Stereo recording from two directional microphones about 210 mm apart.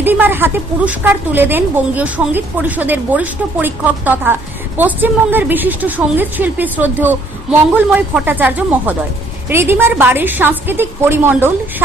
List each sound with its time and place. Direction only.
0.0 s a woman's voice: 10° right (ahead or behind)